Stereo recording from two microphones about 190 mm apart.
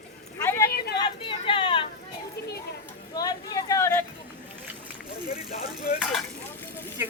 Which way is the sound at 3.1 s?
20° left (ahead or behind).